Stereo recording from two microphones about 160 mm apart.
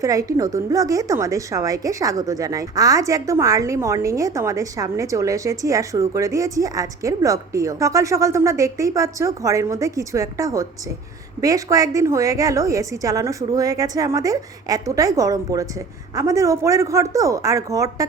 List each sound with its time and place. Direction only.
0.0 s a woman's voice: 20° right (ahead or behind)